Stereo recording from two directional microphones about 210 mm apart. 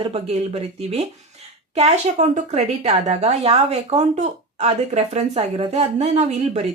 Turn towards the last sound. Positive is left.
turn(degrees=-30)  # may be behind; listen again after turning